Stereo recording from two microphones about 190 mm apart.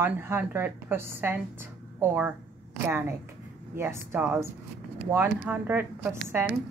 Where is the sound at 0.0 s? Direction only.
10° right (ahead or behind).